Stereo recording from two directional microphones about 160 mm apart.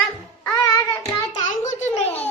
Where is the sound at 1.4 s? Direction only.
50° left (ahead or behind).